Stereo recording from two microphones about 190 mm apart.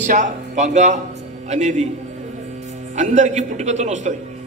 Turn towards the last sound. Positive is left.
turn(degrees=-40)  # may be behind; listen again after turning